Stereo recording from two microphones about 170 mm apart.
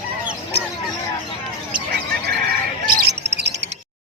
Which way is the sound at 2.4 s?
60° right (ahead or behind).